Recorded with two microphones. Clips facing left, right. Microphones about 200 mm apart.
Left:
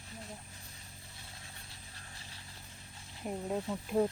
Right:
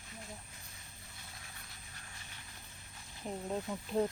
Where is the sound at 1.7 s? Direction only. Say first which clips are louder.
Left 1 dB; 30° left (ahead or behind).